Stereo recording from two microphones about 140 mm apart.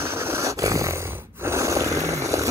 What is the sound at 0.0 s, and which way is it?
Snoring, 15° right (ahead or behind).